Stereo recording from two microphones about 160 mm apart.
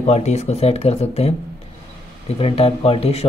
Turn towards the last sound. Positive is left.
turn(degrees=40)  # may be behind; listen again after turning